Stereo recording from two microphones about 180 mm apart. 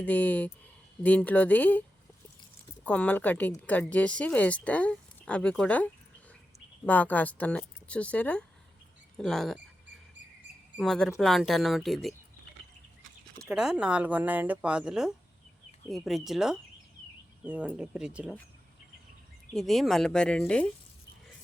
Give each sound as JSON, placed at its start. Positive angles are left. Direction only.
{"t": 0.0, "sound": "a woman's voice", "side_deg": 10}
{"t": 2.8, "sound": "a woman's voice", "side_deg": 10}
{"t": 10.8, "sound": "speech", "side_deg": 5}
{"t": 13.5, "sound": "speech", "side_deg": -5}
{"t": 19.5, "sound": "speech", "side_deg": 0}